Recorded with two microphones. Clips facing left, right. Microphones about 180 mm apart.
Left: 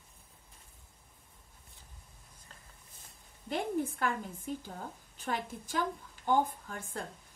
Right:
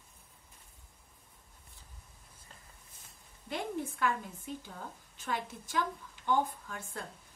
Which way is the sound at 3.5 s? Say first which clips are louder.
Left 4 dB; 45° left (ahead or behind).